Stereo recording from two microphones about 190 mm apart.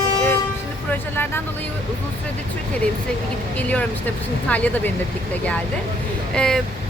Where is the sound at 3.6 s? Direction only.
5° left (ahead or behind).